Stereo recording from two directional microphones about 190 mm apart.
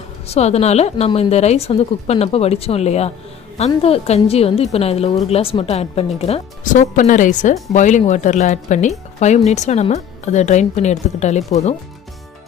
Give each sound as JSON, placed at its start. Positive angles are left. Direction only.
{"t": 0.3, "sound": "a woman's voice", "side_deg": 35}